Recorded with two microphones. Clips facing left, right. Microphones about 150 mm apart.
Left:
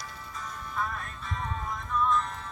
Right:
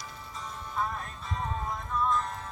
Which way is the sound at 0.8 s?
25° right (ahead or behind).